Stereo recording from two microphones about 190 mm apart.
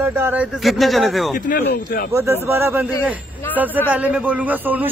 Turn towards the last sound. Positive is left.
turn(degrees=-10)  # may be behind; listen again after turning